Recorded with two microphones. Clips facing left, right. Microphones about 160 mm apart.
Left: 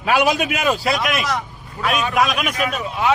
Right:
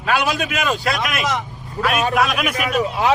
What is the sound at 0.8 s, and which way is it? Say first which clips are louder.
A man's voice: left 1 dB; centre (ahead or behind).